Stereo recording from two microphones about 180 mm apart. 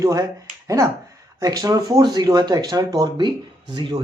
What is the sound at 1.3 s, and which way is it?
Speech, 20° right (ahead or behind).